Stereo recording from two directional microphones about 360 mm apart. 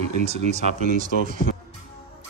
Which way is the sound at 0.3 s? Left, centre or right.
Centre.